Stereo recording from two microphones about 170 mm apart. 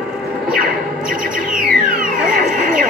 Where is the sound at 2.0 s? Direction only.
50° right (ahead or behind).